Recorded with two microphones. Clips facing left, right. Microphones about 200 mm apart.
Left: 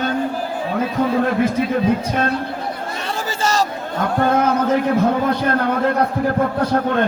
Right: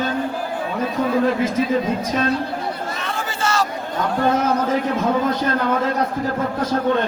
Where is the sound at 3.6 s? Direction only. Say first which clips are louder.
Left 2 dB; 50° left (ahead or behind).